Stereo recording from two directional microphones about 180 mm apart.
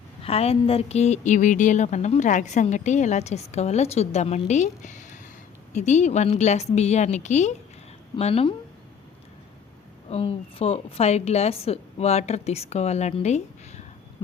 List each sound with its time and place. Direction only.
0.2 s a woman's voice: 35° left (ahead or behind)
10.1 s a woman's voice: 35° left (ahead or behind)